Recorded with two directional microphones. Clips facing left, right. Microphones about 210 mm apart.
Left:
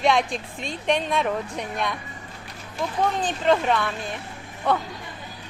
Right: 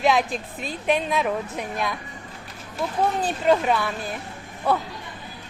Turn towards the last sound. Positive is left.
turn(degrees=-5)  # may be behind; listen again after turning